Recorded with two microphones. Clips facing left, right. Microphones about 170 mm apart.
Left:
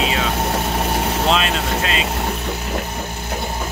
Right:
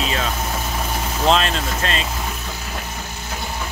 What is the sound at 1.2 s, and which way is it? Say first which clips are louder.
Speech: right 4 dB; 5° left (ahead or behind).